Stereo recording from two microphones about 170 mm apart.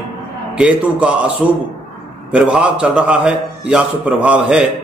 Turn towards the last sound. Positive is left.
turn(degrees=-5)  # may be behind; listen again after turning